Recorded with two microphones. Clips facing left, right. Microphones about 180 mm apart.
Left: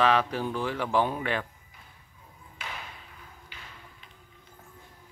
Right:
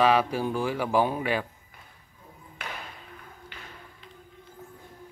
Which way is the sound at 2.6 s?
60° right (ahead or behind).